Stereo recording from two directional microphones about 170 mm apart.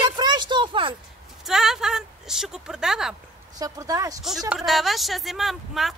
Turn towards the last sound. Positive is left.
turn(degrees=0)  # may be behind; listen again after turning